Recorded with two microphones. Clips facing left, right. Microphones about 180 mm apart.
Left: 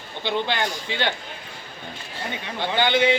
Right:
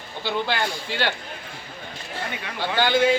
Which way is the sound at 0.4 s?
5° right (ahead or behind).